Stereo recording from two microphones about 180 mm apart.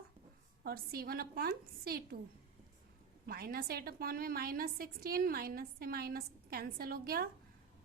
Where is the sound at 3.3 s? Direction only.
55° right (ahead or behind).